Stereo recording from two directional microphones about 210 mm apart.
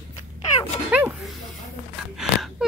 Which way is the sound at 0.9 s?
5° right (ahead or behind).